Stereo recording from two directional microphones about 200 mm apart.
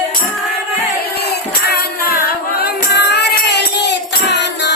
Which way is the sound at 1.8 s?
50° left (ahead or behind).